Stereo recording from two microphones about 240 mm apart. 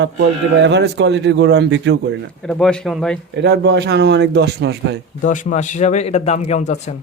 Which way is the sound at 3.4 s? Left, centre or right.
Right.